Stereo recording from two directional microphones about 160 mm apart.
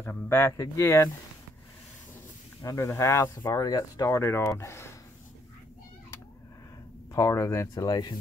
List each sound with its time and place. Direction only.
0.3 s speech: 15° left (ahead or behind)
2.6 s speech: 20° left (ahead or behind)
7.2 s speech: 20° left (ahead or behind)